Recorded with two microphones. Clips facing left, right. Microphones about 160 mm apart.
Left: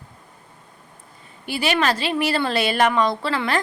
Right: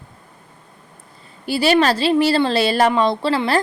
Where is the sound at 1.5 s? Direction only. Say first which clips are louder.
Right 6 dB; 35° right (ahead or behind).